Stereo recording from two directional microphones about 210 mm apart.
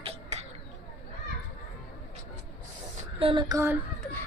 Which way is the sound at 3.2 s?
25° right (ahead or behind).